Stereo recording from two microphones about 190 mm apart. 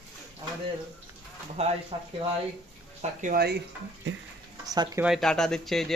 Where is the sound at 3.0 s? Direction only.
40° right (ahead or behind).